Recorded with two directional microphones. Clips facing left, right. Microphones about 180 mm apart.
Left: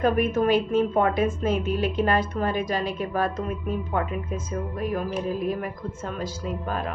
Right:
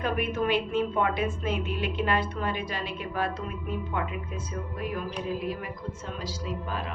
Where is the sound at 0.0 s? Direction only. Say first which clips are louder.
Left 6 dB; 45° left (ahead or behind).